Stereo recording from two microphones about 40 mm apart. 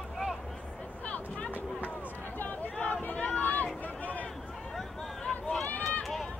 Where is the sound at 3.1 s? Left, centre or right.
Left.